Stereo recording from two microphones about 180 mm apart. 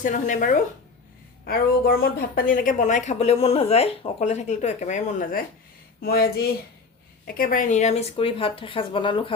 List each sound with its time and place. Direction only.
0.0 s a woman's voice: 45° left (ahead or behind); by 9.3 s 25° left (ahead or behind)